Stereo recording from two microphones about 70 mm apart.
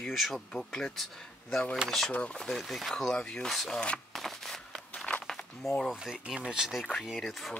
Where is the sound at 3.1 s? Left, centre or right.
Centre.